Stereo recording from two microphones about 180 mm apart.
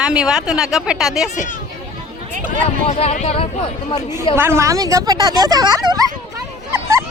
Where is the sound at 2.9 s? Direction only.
35° left (ahead or behind).